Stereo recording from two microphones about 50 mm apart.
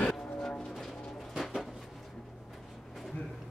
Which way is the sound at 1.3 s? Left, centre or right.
Centre.